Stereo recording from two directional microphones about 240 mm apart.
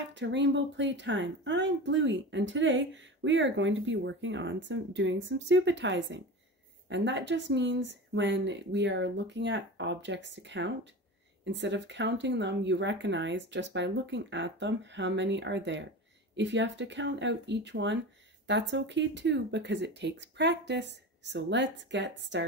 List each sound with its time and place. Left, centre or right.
0.1 s speech: right